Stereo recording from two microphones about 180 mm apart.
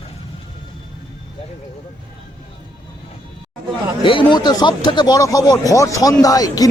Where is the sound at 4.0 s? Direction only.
25° left (ahead or behind).